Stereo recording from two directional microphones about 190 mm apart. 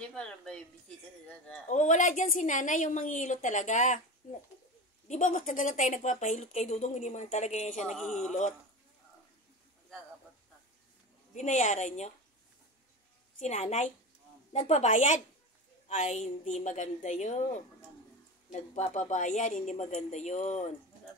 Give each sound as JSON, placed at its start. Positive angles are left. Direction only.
{"t": 0.1, "sound": "a sound", "side_deg": 5}
{"t": 1.7, "sound": "a woman's voice", "side_deg": 40}
{"t": 7.9, "sound": "a sound", "side_deg": 0}
{"t": 8.3, "sound": "a woman's voice", "side_deg": 40}
{"t": 11.3, "sound": "a woman's voice", "side_deg": 40}
{"t": 13.4, "sound": "a woman's voice", "side_deg": 40}
{"t": 18.5, "sound": "a woman's voice", "side_deg": 40}